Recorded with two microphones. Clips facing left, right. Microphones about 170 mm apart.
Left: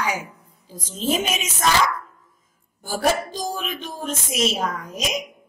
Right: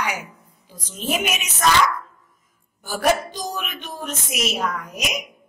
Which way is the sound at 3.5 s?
25° left (ahead or behind).